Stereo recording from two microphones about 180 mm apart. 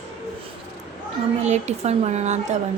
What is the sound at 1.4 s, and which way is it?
Speech, 40° right (ahead or behind).